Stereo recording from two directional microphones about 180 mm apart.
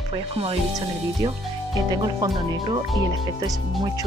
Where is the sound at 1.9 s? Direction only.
25° right (ahead or behind).